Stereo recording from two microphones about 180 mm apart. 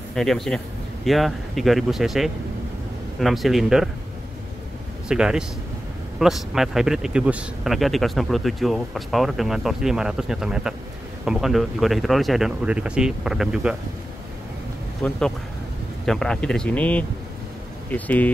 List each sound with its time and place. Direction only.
0.1 s speech: centre (ahead or behind)
5.0 s speech: 5° right (ahead or behind)
15.0 s speech: 5° left (ahead or behind)